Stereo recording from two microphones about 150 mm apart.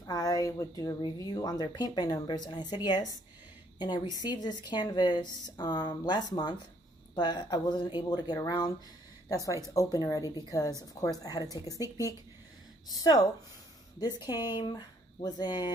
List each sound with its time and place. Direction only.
0.0 s a woman's voice: 25° left (ahead or behind)